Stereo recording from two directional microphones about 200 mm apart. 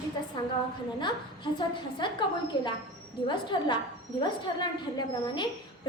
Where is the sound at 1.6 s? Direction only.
25° left (ahead or behind).